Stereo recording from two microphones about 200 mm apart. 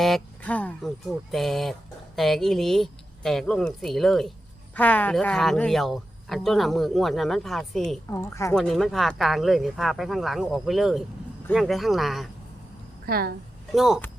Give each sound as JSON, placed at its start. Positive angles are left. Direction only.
{"t": 0.0, "sound": "speech", "side_deg": 5}
{"t": 8.1, "sound": "speech", "side_deg": 15}
{"t": 8.5, "sound": "speech", "side_deg": 0}
{"t": 13.1, "sound": "a woman's voice", "side_deg": -50}
{"t": 13.7, "sound": "speech", "side_deg": 0}